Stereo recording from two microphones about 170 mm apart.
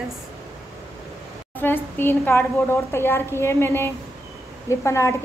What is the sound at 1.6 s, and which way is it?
A woman's voice, 10° left (ahead or behind).